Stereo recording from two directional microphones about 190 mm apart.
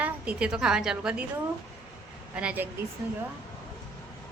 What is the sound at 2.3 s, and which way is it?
Speech, 5° right (ahead or behind).